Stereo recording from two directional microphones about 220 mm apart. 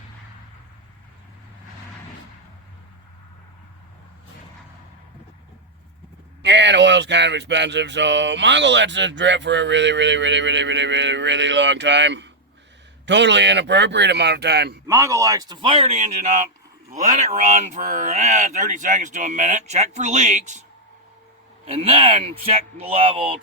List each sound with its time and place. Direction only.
6.4 s speech: 50° right (ahead or behind)
14.8 s speech: 15° right (ahead or behind); by 20.7 s 30° right (ahead or behind)
21.7 s speech: 25° right (ahead or behind)